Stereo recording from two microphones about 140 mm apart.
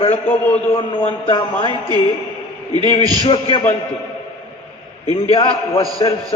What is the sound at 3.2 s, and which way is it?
Speech, 40° left (ahead or behind).